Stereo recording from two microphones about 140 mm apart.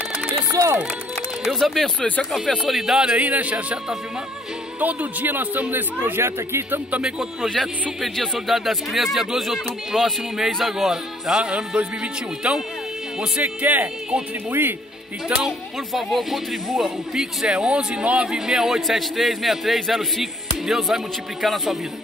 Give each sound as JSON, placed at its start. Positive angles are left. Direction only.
{"t": 0.1, "sound": "run", "side_deg": -5}
{"t": 0.5, "sound": "run", "side_deg": -20}
{"t": 1.4, "sound": "a man's voice", "side_deg": 0}